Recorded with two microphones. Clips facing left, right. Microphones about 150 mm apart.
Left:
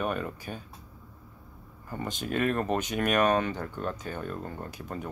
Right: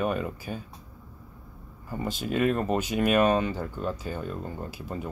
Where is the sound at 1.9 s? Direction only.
10° right (ahead or behind).